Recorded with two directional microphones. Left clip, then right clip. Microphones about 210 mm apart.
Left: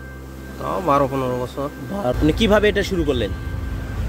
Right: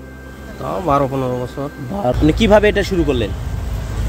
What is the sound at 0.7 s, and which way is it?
Speech, 10° left (ahead or behind).